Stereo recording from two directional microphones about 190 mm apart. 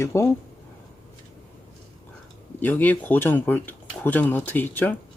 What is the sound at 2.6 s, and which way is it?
Speech, 10° left (ahead or behind).